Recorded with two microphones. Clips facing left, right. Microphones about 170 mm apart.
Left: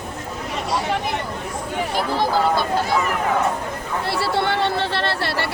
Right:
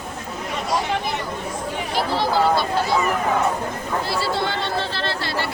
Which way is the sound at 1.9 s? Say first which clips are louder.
Even; 50° left (ahead or behind).